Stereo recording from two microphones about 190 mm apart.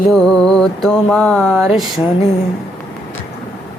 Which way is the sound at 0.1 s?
5° left (ahead or behind).